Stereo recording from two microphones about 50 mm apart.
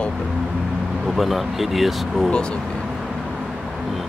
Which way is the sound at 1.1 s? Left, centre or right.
Centre.